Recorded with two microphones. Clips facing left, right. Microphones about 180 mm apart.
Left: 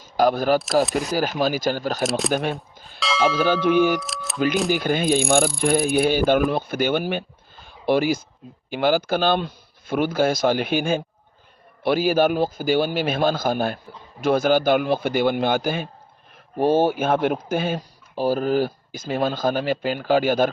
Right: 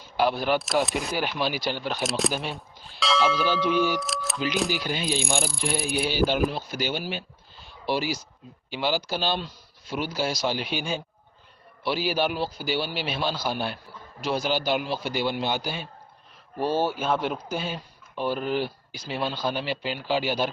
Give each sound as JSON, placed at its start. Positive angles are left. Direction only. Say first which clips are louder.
{"t": 0.0, "sound": "speech", "louder": "left 5 dB", "side_deg": 45}
{"t": 2.0, "sound": "speech", "louder": "even", "side_deg": 0}
{"t": 2.3, "sound": "speech", "louder": "left 8 dB", "side_deg": 55}
{"t": 4.0, "sound": "camera", "louder": "right 2 dB", "side_deg": 0}
{"t": 4.7, "sound": "speech", "louder": "left 8 dB", "side_deg": 50}
{"t": 18.1, "sound": "speech", "louder": "left 6 dB", "side_deg": 40}